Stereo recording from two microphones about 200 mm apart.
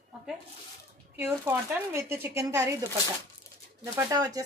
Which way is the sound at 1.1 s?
10° right (ahead or behind).